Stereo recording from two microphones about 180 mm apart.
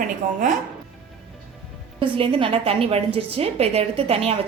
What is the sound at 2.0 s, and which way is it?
A woman's voice, 30° right (ahead or behind).